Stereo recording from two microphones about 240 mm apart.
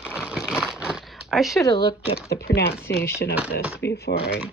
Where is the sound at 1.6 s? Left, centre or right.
Centre.